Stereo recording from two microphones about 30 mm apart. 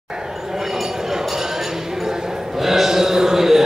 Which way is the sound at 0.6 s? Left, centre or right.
Centre.